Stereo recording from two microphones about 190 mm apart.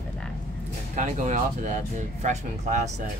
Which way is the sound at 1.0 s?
40° right (ahead or behind).